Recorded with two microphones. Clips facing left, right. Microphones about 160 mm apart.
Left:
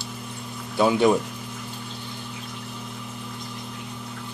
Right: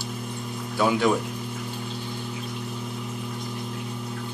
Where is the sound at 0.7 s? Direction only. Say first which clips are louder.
Left 3 dB; 15° left (ahead or behind).